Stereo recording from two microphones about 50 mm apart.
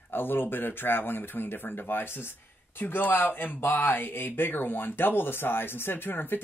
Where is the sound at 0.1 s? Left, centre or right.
Left.